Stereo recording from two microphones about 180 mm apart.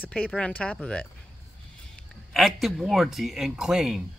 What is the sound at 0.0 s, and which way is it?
Speech, 5° left (ahead or behind).